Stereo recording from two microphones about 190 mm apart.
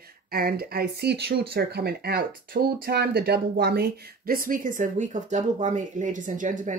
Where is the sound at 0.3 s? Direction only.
55° right (ahead or behind).